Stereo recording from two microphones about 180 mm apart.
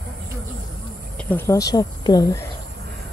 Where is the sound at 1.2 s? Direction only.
10° left (ahead or behind).